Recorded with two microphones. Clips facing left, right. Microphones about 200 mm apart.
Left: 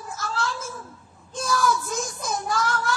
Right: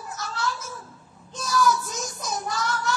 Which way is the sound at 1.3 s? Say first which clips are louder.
Even; 50° left (ahead or behind).